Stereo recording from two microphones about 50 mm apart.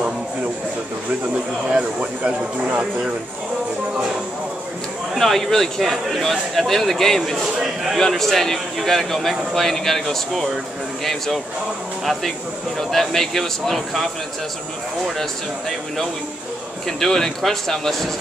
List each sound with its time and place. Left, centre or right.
1.7 s speech: right
5.1 s a man's voice: centre
12.7 s a man's voice: centre
16.8 s a man's voice: centre